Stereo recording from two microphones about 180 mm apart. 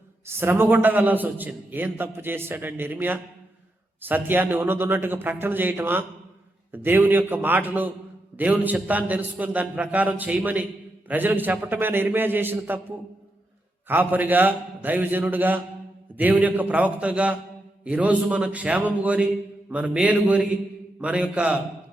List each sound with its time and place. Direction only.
0.3 s a man's voice: 10° right (ahead or behind)
13.8 s a man's voice: 10° right (ahead or behind)